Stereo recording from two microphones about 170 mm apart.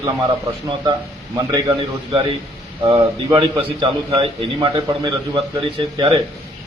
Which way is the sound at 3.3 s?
30° right (ahead or behind).